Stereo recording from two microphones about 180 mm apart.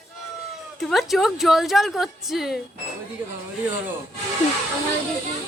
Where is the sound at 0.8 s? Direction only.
Centre (ahead or behind).